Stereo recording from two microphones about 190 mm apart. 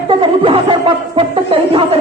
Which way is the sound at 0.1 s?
25° right (ahead or behind).